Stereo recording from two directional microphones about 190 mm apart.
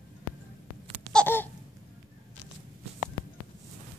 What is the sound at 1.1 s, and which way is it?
Babbling, 10° left (ahead or behind).